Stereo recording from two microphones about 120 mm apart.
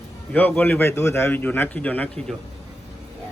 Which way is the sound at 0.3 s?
15° left (ahead or behind).